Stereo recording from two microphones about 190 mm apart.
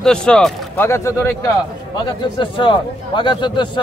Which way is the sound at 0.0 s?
5° left (ahead or behind).